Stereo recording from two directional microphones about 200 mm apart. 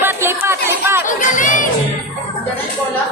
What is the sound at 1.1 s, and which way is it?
Music, 40° left (ahead or behind).